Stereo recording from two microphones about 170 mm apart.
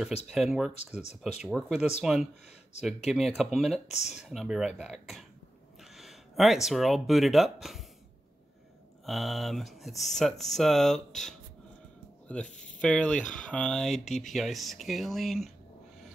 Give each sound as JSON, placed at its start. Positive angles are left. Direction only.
{"t": 0.3, "sound": "speech", "side_deg": 0}
{"t": 2.7, "sound": "speech", "side_deg": 40}
{"t": 3.1, "sound": "speech", "side_deg": 0}
{"t": 9.0, "sound": "speech", "side_deg": 0}